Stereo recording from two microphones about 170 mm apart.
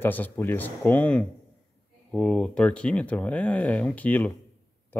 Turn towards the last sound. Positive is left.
turn(degrees=10)  # may be behind; listen again after turning